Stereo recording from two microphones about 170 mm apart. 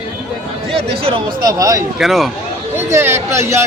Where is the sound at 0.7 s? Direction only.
35° right (ahead or behind).